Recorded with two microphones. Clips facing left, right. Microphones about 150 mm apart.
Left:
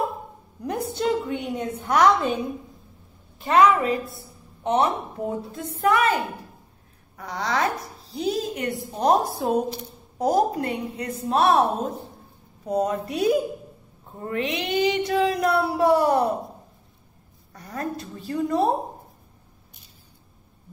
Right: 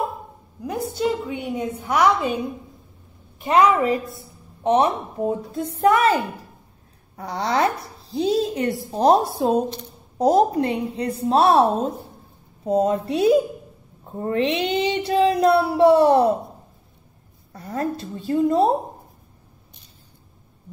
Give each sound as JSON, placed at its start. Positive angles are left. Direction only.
{"t": 0.6, "sound": "a woman's voice", "side_deg": -5}
{"t": 3.5, "sound": "child singing", "side_deg": -25}
{"t": 4.6, "sound": "a woman's voice", "side_deg": -30}
{"t": 7.2, "sound": "child singing", "side_deg": -30}
{"t": 8.9, "sound": "a woman's voice", "side_deg": -30}
{"t": 10.1, "sound": "child singing", "side_deg": -25}
{"t": 17.5, "sound": "child singing", "side_deg": -30}